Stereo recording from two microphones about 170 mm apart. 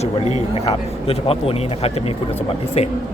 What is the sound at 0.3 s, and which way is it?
A man's voice, 40° left (ahead or behind).